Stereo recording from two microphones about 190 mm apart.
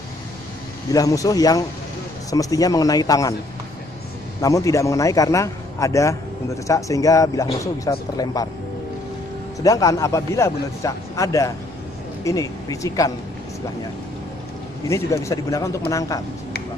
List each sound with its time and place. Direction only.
0.9 s speech: 20° left (ahead or behind)
4.4 s a man's voice: 15° left (ahead or behind)
9.6 s a man's voice: 20° left (ahead or behind)
14.9 s a man's voice: 15° left (ahead or behind)